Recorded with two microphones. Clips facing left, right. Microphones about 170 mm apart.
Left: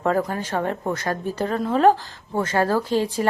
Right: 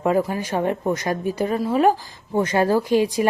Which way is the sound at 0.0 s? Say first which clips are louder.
Right 2 dB; 10° right (ahead or behind).